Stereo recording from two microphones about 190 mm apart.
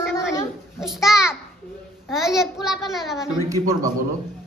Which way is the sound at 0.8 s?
Centre (ahead or behind).